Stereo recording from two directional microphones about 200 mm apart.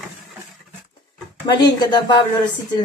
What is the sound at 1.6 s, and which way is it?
Speech, 20° left (ahead or behind).